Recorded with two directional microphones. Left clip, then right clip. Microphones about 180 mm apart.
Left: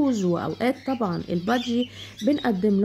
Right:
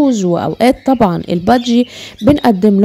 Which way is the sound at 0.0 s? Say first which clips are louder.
Right 11 dB; 35° right (ahead or behind).